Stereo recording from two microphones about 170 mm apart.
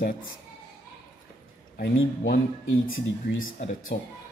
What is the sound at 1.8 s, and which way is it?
Speech, 65° left (ahead or behind).